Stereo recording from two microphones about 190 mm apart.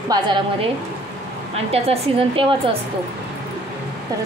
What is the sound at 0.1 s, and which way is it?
Speech, 25° right (ahead or behind).